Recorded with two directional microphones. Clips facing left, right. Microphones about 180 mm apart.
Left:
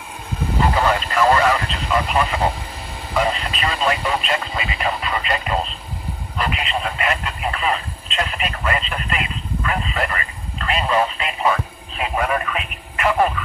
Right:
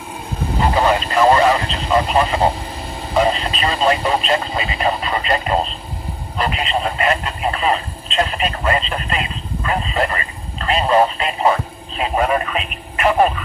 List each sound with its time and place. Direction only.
0.7 s vehicle: 20° right (ahead or behind)
3.2 s speech: 25° right (ahead or behind)